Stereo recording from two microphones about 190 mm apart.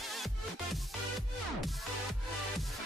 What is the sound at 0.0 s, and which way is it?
Music, centre (ahead or behind).